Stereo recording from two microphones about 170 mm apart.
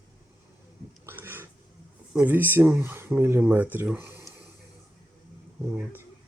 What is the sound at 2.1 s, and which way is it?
Speech, 10° right (ahead or behind).